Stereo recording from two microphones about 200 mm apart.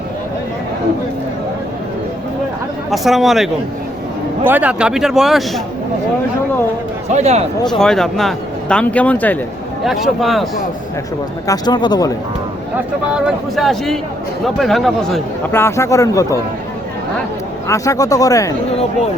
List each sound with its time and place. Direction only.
2.9 s speech: centre (ahead or behind)
7.1 s speech: 35° right (ahead or behind)
7.8 s speech: centre (ahead or behind)
11.4 s speech: 20° left (ahead or behind)
12.7 s speech: 5° right (ahead or behind)
15.5 s speech: 15° left (ahead or behind)
17.7 s speech: 15° left (ahead or behind)